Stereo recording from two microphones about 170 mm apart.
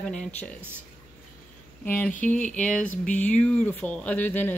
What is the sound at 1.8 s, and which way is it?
Speech, 10° left (ahead or behind).